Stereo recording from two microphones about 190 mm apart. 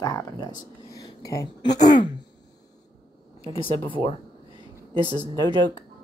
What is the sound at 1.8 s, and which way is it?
Throat clearing, 40° left (ahead or behind).